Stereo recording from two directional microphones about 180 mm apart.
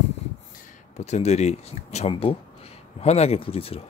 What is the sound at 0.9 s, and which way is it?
Speech, 40° left (ahead or behind).